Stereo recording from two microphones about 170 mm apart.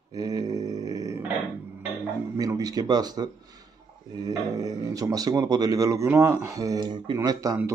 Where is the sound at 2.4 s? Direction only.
20° right (ahead or behind).